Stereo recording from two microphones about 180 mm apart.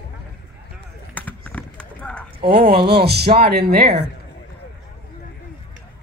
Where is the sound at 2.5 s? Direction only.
60° right (ahead or behind).